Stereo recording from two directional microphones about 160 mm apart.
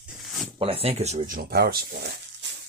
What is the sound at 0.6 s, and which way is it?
Speech, 40° right (ahead or behind).